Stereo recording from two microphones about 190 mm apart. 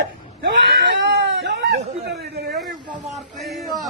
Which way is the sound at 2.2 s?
60° right (ahead or behind).